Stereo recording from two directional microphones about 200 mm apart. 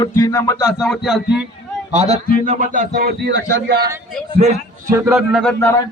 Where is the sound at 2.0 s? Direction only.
30° right (ahead or behind); by 3.3 s 50° right (ahead or behind).